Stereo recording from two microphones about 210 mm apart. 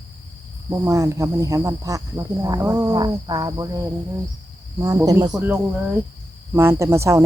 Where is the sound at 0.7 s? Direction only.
15° right (ahead or behind).